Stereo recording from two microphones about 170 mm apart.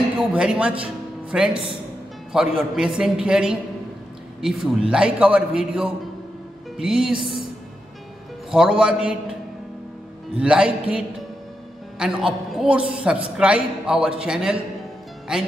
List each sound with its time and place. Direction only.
0.3 s speech: 5° right (ahead or behind)
1.5 s speech: 30° right (ahead or behind)
2.3 s a man's voice: 5° right (ahead or behind)
8.5 s a man's voice: 5° right (ahead or behind)
10.3 s a man's voice: 5° right (ahead or behind)